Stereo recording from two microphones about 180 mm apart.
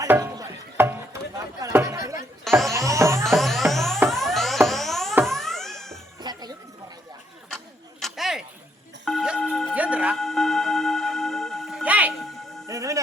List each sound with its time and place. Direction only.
0.0 s a sound: 15° right (ahead or behind)
2.4 s music: centre (ahead or behind)
2.7 s music: 15° right (ahead or behind)
3.2 s music: centre (ahead or behind)
6.2 s cat: 25° right (ahead or behind)
8.0 s a sound: centre (ahead or behind)
9.0 s music: 5° right (ahead or behind)